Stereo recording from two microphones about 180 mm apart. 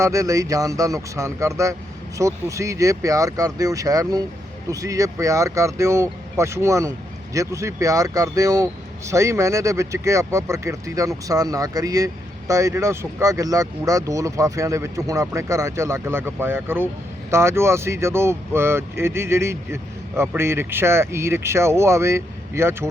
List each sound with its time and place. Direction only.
0.0 s speech: 20° right (ahead or behind)